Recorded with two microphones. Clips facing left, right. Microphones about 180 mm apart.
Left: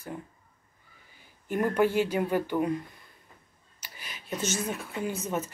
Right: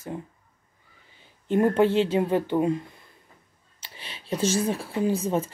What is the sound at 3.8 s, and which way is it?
Speech, 30° right (ahead or behind).